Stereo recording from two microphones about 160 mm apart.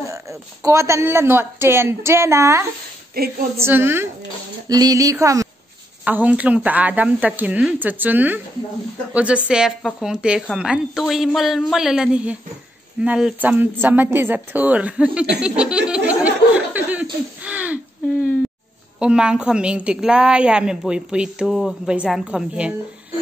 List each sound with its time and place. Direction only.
0.0 s a woman's voice: 20° right (ahead or behind)
3.2 s a sound: 70° right (ahead or behind)
3.5 s a woman's voice: 15° right (ahead or behind)
6.0 s a woman's voice: 10° right (ahead or behind)
16.1 s chuckle: 10° right (ahead or behind)
18.9 s a woman's voice: 5° right (ahead or behind)